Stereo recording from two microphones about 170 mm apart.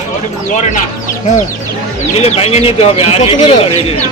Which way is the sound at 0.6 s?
45° left (ahead or behind).